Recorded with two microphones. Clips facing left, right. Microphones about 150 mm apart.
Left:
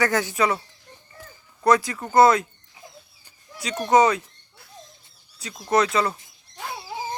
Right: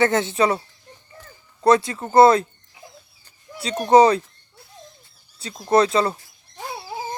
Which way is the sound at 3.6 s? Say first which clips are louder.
Right 4 dB; 30° right (ahead or behind).